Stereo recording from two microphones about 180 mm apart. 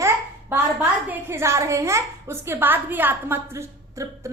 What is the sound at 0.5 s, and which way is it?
A woman's voice, 10° right (ahead or behind).